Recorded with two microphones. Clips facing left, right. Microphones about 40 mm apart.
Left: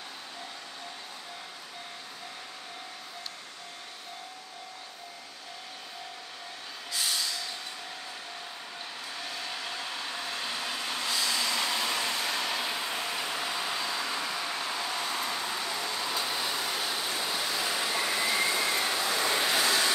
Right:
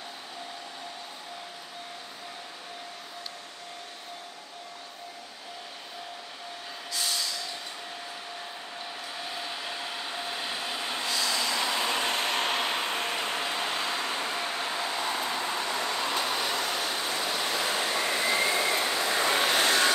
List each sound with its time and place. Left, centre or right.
9.3 s train: centre
11.1 s vehicle: centre
11.5 s vehicle: right
16.7 s a sound: centre
17.1 s a sound: right
17.9 s vehicle: centre; by 19.9 s right